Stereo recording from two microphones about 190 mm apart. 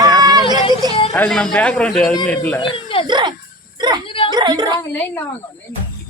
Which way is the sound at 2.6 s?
25° left (ahead or behind).